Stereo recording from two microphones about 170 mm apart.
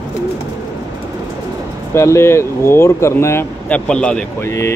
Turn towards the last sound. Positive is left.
turn(degrees=15)  # may be behind; listen again after turning